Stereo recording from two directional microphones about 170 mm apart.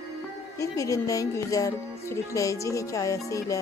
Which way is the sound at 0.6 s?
20° left (ahead or behind).